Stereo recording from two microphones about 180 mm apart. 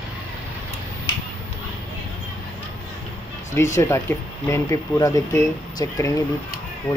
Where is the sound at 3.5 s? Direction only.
15° left (ahead or behind).